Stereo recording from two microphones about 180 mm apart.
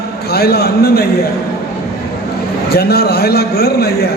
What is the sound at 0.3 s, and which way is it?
Speech, 60° left (ahead or behind).